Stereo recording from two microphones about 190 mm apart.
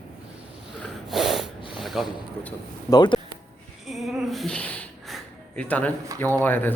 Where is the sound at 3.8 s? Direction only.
Centre (ahead or behind).